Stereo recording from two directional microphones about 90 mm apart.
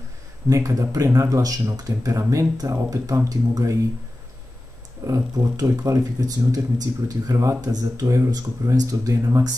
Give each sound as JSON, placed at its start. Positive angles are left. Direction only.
{"t": 0.5, "sound": "speech", "side_deg": -35}
{"t": 5.0, "sound": "speech", "side_deg": -35}